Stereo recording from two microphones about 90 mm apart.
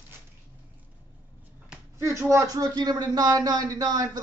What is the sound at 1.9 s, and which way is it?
A man's voice, 35° right (ahead or behind).